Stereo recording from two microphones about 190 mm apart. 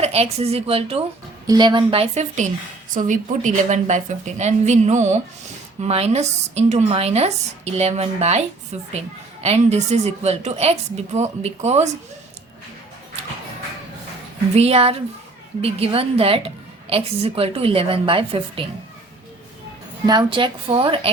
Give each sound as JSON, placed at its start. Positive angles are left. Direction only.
{"t": 0.0, "sound": "a woman's voice", "side_deg": -35}
{"t": 14.5, "sound": "a woman's voice", "side_deg": -30}
{"t": 20.1, "sound": "a woman's voice", "side_deg": -25}